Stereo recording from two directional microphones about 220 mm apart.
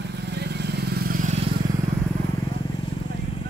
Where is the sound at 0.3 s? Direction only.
50° right (ahead or behind); by 1.5 s 35° right (ahead or behind).